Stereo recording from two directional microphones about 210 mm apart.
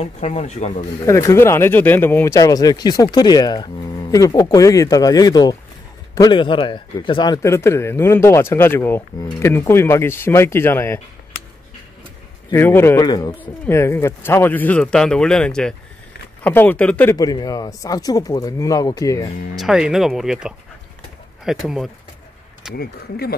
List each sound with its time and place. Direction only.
0.0 s speech: 35° left (ahead or behind)
1.0 s speech: 15° left (ahead or behind)
12.4 s speech: 10° left (ahead or behind)
19.5 s speech: centre (ahead or behind)
22.8 s speech: 45° left (ahead or behind)